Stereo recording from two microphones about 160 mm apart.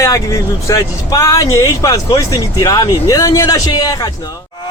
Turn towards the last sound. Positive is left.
turn(degrees=25)  # may be behind; listen again after turning